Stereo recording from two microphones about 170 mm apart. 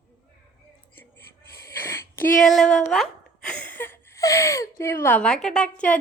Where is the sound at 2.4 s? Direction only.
Centre (ahead or behind).